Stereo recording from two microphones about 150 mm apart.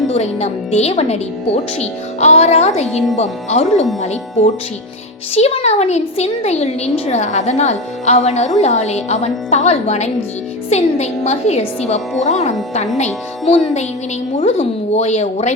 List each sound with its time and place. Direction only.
0.1 s a woman's voice: 45° left (ahead or behind)